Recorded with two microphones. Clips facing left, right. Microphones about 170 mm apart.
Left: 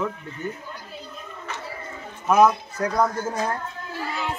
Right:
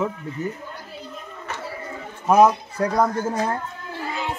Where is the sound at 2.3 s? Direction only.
35° right (ahead or behind).